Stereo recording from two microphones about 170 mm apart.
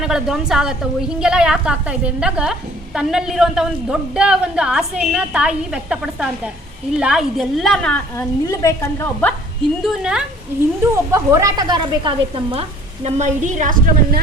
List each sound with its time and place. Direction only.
0.0 s a woman's voice: 5° right (ahead or behind); by 9.3 s 15° left (ahead or behind)
9.8 s a woman's voice: 5° right (ahead or behind)
10.9 s speech: 15° right (ahead or behind)
13.1 s a woman's voice: 45° right (ahead or behind)